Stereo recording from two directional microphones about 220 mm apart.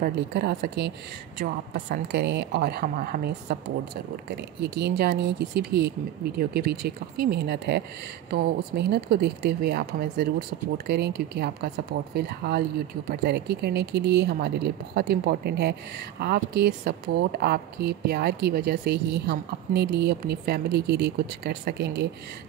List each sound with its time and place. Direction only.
0.0 s a woman's voice: 45° right (ahead or behind)